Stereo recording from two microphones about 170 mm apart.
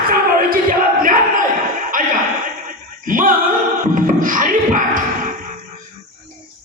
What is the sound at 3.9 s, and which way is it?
Music, 50° right (ahead or behind).